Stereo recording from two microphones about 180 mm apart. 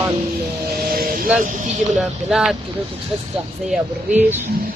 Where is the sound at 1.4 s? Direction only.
45° right (ahead or behind).